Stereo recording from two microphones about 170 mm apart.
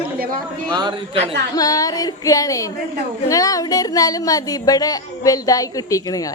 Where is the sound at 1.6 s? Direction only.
20° left (ahead or behind).